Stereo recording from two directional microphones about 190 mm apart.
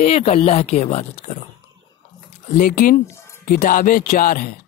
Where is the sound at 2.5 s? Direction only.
45° left (ahead or behind).